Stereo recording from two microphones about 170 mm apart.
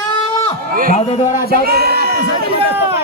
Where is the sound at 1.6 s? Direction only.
70° right (ahead or behind).